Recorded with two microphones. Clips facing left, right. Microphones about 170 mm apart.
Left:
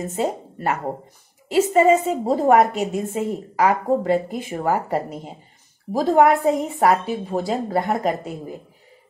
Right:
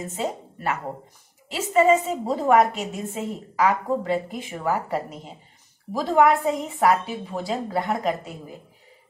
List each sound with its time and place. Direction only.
0.1 s a woman's voice: 40° left (ahead or behind)